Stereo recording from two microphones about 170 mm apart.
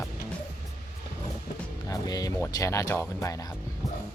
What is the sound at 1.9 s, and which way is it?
Speech, 20° left (ahead or behind).